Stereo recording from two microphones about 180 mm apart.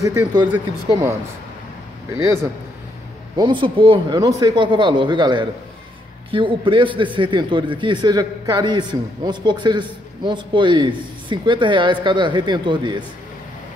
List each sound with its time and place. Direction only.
0.0 s speech: 15° right (ahead or behind)
3.3 s a man's voice: 25° right (ahead or behind)